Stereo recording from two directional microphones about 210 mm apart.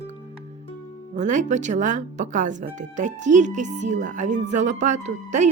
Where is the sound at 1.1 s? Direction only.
35° right (ahead or behind).